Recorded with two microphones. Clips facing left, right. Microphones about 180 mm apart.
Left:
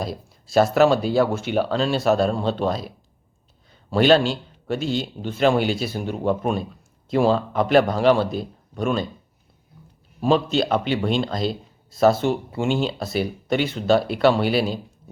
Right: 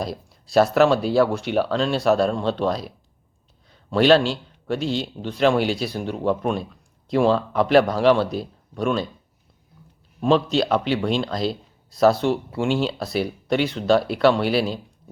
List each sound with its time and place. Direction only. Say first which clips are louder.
0.0 s a man's voice: even; centre (ahead or behind)
3.9 s a man's voice: even; centre (ahead or behind)
10.2 s a man's voice: even; centre (ahead or behind)